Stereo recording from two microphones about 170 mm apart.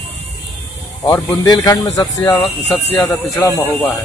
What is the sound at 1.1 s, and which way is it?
Speech, 20° left (ahead or behind).